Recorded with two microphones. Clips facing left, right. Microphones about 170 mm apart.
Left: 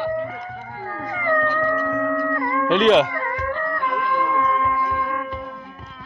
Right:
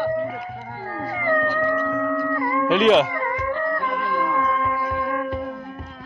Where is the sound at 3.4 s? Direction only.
20° right (ahead or behind); by 5.5 s 50° right (ahead or behind).